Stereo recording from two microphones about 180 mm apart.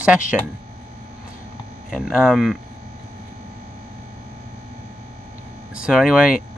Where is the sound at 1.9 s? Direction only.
Centre (ahead or behind).